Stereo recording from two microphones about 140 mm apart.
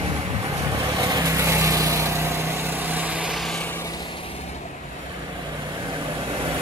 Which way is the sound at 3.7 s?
25° left (ahead or behind).